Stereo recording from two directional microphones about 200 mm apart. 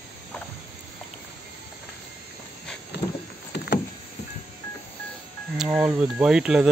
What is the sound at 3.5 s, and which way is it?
Vehicle, 60° left (ahead or behind).